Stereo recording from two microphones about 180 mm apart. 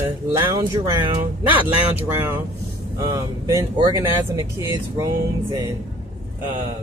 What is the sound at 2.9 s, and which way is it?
Speech, 15° right (ahead or behind).